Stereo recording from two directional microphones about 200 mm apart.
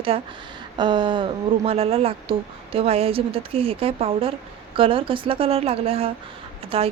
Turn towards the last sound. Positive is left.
turn(degrees=-30)  # may be behind; listen again after turning